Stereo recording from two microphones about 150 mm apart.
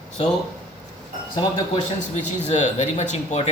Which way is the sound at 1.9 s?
50° left (ahead or behind).